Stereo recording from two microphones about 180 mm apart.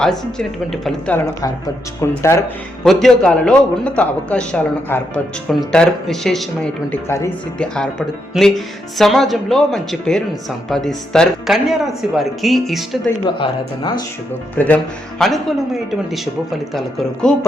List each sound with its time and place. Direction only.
0.0 s a man's voice: 5° left (ahead or behind)
1.4 s speech: 15° left (ahead or behind)
2.8 s a man's voice: 5° left (ahead or behind)
6.9 s speech: 15° left (ahead or behind)
7.8 s a man's voice: centre (ahead or behind)
13.2 s speech: 25° left (ahead or behind)
14.6 s a man's voice: 10° left (ahead or behind)